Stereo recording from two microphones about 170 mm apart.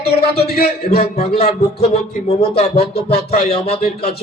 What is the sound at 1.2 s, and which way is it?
Speech, 35° left (ahead or behind).